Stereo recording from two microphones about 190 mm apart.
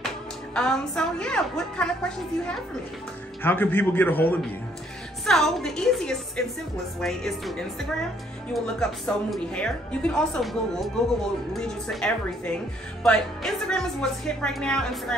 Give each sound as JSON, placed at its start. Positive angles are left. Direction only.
{"t": 0.6, "sound": "a man's voice", "side_deg": 5}